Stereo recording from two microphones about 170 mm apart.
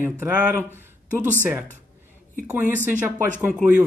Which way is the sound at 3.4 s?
10° right (ahead or behind).